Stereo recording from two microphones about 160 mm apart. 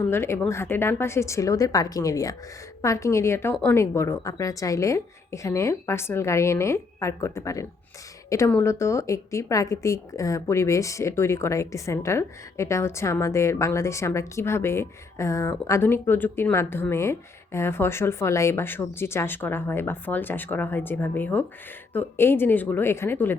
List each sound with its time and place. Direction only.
0.1 s a woman's voice: 15° left (ahead or behind)